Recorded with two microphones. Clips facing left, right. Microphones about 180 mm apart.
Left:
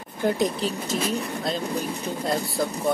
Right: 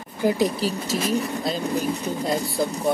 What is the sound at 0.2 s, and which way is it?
Speech, 5° right (ahead or behind).